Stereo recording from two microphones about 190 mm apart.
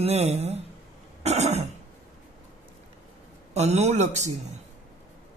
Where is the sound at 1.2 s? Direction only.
35° right (ahead or behind).